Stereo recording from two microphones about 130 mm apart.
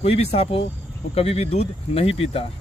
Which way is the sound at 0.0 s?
50° left (ahead or behind).